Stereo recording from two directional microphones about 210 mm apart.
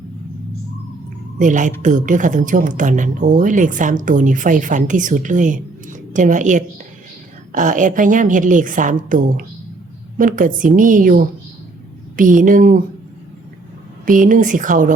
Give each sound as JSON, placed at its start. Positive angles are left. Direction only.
{"t": 1.4, "sound": "speech", "side_deg": -35}
{"t": 14.0, "sound": "speech", "side_deg": -40}